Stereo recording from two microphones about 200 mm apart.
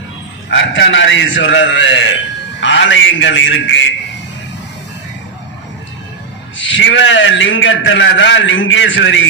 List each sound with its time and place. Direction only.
0.5 s a man's voice: 70° left (ahead or behind)
6.6 s a man's voice: 65° left (ahead or behind)